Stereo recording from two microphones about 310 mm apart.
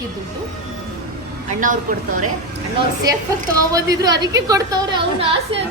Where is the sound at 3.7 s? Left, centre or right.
Centre.